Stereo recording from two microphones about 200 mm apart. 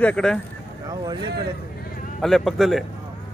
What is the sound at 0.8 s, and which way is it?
Speech, 20° right (ahead or behind).